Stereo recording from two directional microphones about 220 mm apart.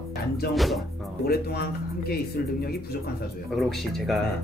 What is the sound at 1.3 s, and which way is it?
Speech, 45° left (ahead or behind).